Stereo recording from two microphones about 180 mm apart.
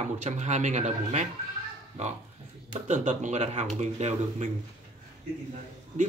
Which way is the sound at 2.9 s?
40° right (ahead or behind).